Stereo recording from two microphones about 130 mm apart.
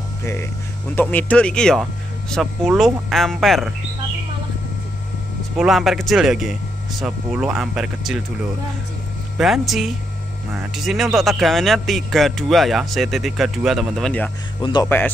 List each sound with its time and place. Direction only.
0.2 s speech: 20° left (ahead or behind); by 3.7 s centre (ahead or behind)
5.6 s speech: centre (ahead or behind)
9.4 s speech: centre (ahead or behind)
14.6 s speech: 35° left (ahead or behind)